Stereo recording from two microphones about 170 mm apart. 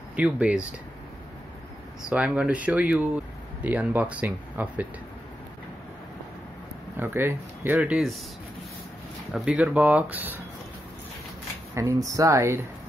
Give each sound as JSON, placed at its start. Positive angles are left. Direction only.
{"t": 0.1, "sound": "speech", "side_deg": -10}
{"t": 2.0, "sound": "speech", "side_deg": -5}
{"t": 7.0, "sound": "speech", "side_deg": -15}
{"t": 9.3, "sound": "speech", "side_deg": -5}
{"t": 11.7, "sound": "speech", "side_deg": -15}